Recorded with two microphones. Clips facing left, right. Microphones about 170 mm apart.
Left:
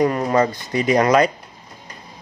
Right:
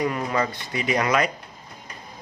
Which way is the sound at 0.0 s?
40° left (ahead or behind).